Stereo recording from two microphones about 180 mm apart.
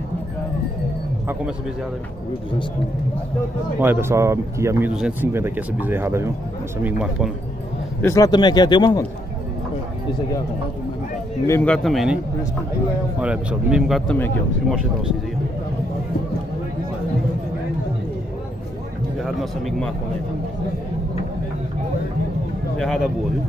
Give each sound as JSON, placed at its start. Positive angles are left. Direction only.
{"t": 3.8, "sound": "speech", "side_deg": -15}
{"t": 8.0, "sound": "speech", "side_deg": 20}
{"t": 11.4, "sound": "speech", "side_deg": 10}
{"t": 13.2, "sound": "speech", "side_deg": -5}
{"t": 14.1, "sound": "speech", "side_deg": 10}